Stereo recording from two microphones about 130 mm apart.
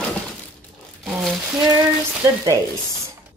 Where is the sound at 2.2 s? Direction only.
20° right (ahead or behind).